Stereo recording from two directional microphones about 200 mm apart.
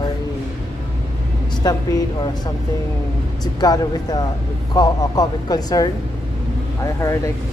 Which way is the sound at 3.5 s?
20° left (ahead or behind).